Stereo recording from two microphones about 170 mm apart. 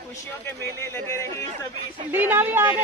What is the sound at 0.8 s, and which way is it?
Speech, 15° left (ahead or behind).